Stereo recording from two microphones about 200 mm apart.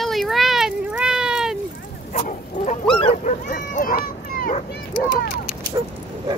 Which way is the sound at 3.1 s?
40° left (ahead or behind).